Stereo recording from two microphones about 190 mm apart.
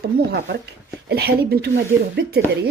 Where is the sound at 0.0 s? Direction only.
60° right (ahead or behind).